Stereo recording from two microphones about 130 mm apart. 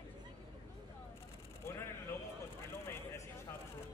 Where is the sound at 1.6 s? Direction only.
20° left (ahead or behind).